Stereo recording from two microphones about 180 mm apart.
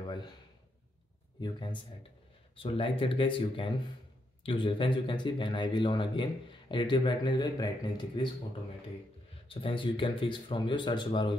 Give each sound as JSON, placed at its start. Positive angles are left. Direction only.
{"t": 0.0, "sound": "a man's voice", "side_deg": 25}
{"t": 1.4, "sound": "speech", "side_deg": 25}
{"t": 9.5, "sound": "speech", "side_deg": 30}